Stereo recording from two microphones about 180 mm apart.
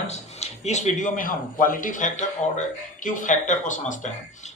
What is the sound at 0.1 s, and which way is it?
A man's voice, 40° left (ahead or behind).